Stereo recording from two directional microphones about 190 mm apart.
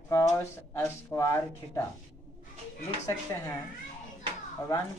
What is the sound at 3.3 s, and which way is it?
Speech, 15° left (ahead or behind).